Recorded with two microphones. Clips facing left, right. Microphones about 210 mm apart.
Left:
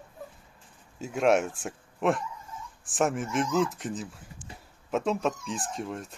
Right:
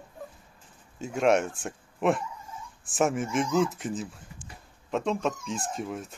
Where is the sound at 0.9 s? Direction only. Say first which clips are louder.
Even; centre (ahead or behind).